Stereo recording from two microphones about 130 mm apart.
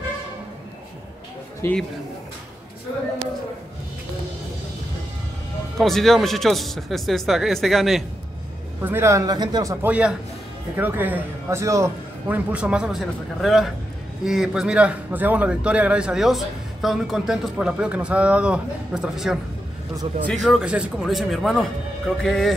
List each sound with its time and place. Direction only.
1.6 s a man's voice: 20° left (ahead or behind)
5.8 s speech: centre (ahead or behind)
8.8 s speech: 20° right (ahead or behind)
9.8 s a man's voice: 10° right (ahead or behind)
20.4 s speech: 5° right (ahead or behind)